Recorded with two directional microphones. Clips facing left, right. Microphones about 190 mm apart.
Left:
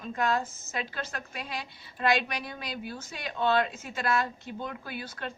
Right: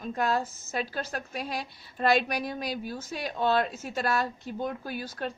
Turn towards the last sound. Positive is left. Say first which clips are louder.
# right 4 dB
turn(degrees=-40)  # may be behind; listen again after turning